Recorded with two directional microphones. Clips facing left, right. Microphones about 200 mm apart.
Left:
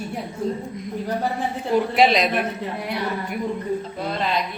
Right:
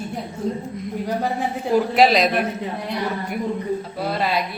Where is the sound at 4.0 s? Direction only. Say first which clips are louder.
Right 4 dB; 5° right (ahead or behind).